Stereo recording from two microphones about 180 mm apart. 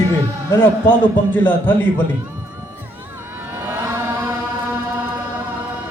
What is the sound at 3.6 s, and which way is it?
Chant, 15° right (ahead or behind).